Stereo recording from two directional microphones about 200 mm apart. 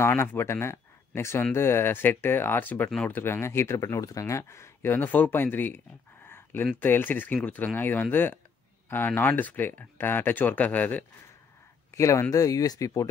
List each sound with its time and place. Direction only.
0.0 s speech: 10° left (ahead or behind)
6.2 s a sound: 10° left (ahead or behind)
6.8 s speech: 10° left (ahead or behind)